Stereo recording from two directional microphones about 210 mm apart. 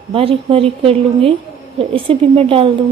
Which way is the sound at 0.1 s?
25° right (ahead or behind).